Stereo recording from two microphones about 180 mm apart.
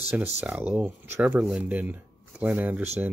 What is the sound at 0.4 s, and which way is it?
Speech, 10° right (ahead or behind).